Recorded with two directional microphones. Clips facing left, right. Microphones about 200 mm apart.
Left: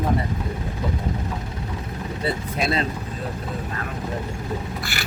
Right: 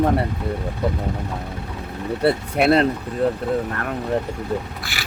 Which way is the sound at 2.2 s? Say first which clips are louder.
Right 7 dB; 65° right (ahead or behind).